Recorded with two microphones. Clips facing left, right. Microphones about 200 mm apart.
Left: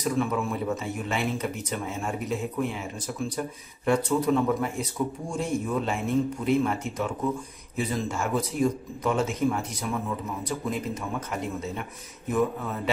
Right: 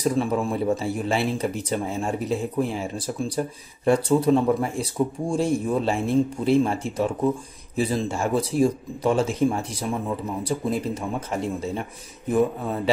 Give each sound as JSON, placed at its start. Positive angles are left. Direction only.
{"t": 0.0, "sound": "speech", "side_deg": -30}